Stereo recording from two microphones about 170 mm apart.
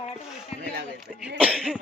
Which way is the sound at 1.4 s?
5° right (ahead or behind).